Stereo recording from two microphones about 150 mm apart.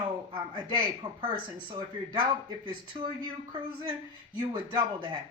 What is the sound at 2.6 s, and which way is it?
Speech, 30° right (ahead or behind).